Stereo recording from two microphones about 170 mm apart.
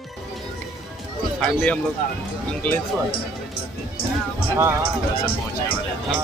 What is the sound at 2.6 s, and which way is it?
Speech, 5° left (ahead or behind).